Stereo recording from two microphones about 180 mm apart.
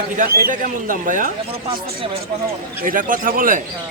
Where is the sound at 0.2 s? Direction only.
55° right (ahead or behind).